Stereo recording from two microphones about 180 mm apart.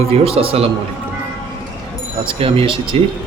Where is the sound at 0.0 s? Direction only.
35° right (ahead or behind).